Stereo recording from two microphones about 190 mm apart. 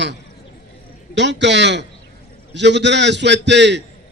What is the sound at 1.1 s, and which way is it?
A man's voice, 70° right (ahead or behind).